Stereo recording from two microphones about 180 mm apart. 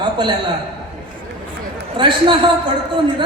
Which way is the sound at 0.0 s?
25° right (ahead or behind).